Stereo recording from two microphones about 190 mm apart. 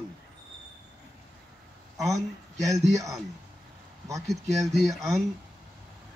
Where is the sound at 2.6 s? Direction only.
15° right (ahead or behind).